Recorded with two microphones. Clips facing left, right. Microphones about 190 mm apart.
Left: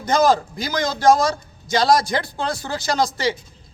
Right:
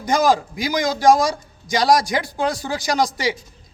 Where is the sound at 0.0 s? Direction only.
10° right (ahead or behind).